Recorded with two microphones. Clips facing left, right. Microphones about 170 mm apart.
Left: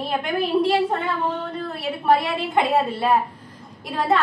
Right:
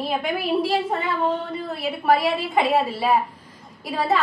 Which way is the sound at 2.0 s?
5° right (ahead or behind).